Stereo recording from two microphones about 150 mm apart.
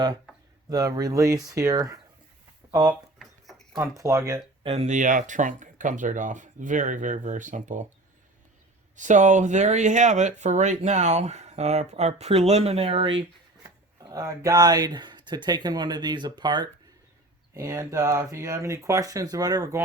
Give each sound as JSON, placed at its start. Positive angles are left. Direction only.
{"t": 0.7, "sound": "speech", "side_deg": -25}
{"t": 3.2, "sound": "a sound", "side_deg": 0}
{"t": 3.8, "sound": "speech", "side_deg": -20}
{"t": 4.6, "sound": "speech", "side_deg": -40}
{"t": 4.9, "sound": "speech", "side_deg": -60}
{"t": 9.0, "sound": "speech", "side_deg": -55}
{"t": 14.0, "sound": "speech", "side_deg": -25}